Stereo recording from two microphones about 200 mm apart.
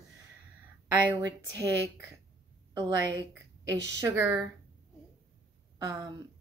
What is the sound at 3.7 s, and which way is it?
Speech, 60° right (ahead or behind).